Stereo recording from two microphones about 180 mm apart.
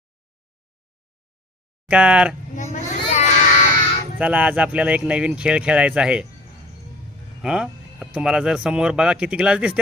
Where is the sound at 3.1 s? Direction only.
40° left (ahead or behind).